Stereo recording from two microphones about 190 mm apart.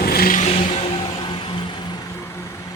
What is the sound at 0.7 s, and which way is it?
Vehicle, 25° left (ahead or behind).